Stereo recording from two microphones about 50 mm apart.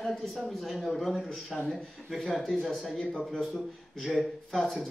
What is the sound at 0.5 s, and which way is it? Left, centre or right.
A man's voice, centre.